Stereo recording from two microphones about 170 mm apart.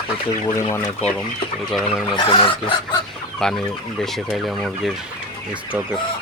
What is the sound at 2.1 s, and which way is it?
Speech, 30° left (ahead or behind).